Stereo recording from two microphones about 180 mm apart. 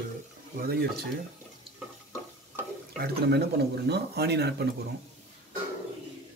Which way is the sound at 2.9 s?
65° right (ahead or behind).